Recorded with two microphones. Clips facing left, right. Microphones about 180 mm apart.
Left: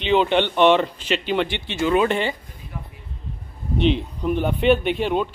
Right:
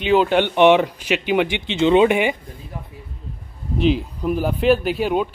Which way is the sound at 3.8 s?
5° right (ahead or behind).